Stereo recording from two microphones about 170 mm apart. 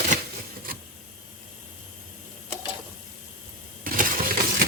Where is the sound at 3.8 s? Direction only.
55° right (ahead or behind).